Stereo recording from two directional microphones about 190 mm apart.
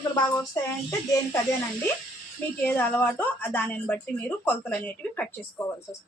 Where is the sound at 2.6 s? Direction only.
10° left (ahead or behind).